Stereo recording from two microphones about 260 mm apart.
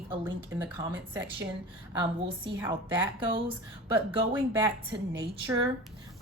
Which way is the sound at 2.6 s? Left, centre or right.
Centre.